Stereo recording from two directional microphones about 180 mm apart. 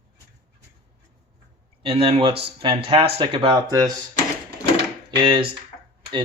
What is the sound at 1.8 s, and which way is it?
Speech, 30° right (ahead or behind).